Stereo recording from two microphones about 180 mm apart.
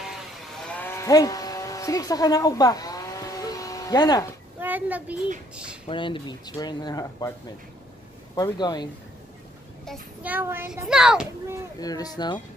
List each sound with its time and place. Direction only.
0.7 s vehicle: 10° left (ahead or behind)
4.6 s a child's voice: 10° right (ahead or behind)
5.9 s speech: 25° left (ahead or behind)
8.4 s speech: 25° left (ahead or behind)
10.2 s a child's voice: 10° right (ahead or behind)
11.8 s speech: 20° left (ahead or behind)